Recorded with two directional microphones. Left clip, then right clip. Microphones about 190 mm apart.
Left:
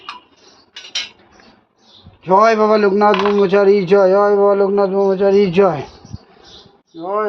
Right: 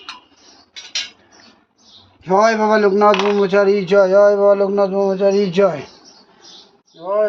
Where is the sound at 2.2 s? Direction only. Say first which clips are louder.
Left 3 dB; 35° left (ahead or behind).